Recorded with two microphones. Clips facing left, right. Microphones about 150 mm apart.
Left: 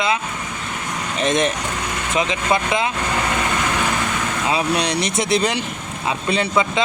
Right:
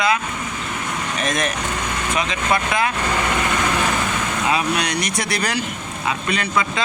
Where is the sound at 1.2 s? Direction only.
25° left (ahead or behind).